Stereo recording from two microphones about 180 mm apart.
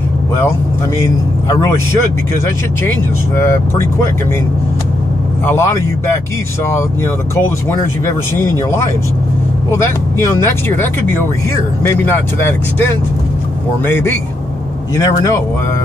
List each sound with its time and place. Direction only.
1.0 s speech: 15° left (ahead or behind)
5.5 s speech: 15° left (ahead or behind)
9.7 s speech: 15° left (ahead or behind)